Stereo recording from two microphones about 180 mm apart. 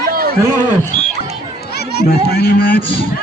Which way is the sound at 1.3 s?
65° left (ahead or behind).